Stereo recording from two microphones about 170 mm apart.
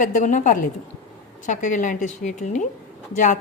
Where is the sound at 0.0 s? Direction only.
45° left (ahead or behind).